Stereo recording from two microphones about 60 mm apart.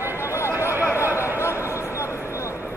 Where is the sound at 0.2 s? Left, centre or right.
Left.